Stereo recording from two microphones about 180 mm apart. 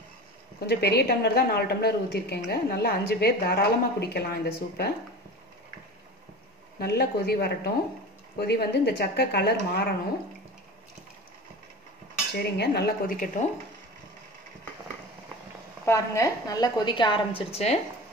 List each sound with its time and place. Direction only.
0.6 s a woman's voice: 60° left (ahead or behind)
6.8 s a woman's voice: 60° left (ahead or behind)
12.4 s a woman's voice: 65° left (ahead or behind)
15.8 s a woman's voice: 15° left (ahead or behind); by 17.7 s 35° left (ahead or behind)